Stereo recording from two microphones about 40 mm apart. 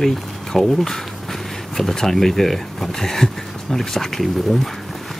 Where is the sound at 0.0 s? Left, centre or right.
Centre.